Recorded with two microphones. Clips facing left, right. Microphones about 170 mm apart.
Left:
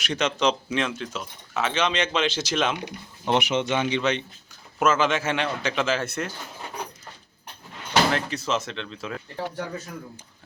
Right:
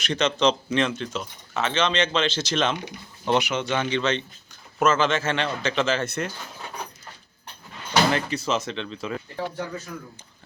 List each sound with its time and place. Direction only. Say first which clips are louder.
0.0 s speech: right 2 dB; 10° left (ahead or behind)
3.2 s speech: even; 25° left (ahead or behind); by 6.3 s 5° left (ahead or behind)
8.1 s speech: right 1 dB; centre (ahead or behind)